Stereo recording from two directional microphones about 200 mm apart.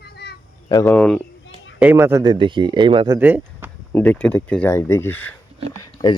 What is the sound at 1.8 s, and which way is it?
Speech, 10° right (ahead or behind).